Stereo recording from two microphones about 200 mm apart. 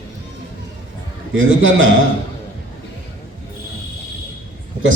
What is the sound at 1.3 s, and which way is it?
Speech, 75° right (ahead or behind).